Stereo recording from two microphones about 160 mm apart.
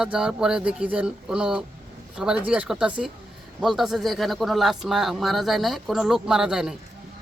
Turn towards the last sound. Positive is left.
turn(degrees=-5)  # may be behind; listen again after turning